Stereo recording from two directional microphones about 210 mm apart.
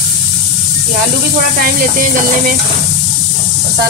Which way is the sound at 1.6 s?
40° right (ahead or behind).